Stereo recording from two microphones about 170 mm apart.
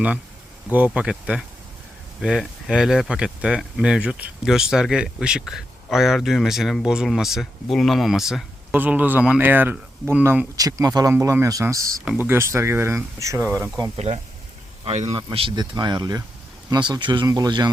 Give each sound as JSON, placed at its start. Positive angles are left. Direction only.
{"t": 0.9, "sound": "speech", "side_deg": -5}
{"t": 10.6, "sound": "speech", "side_deg": -20}
{"t": 13.9, "sound": "speech", "side_deg": -40}
{"t": 15.1, "sound": "speech", "side_deg": -30}